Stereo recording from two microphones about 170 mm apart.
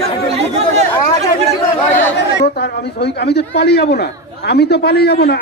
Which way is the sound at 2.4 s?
75° left (ahead or behind).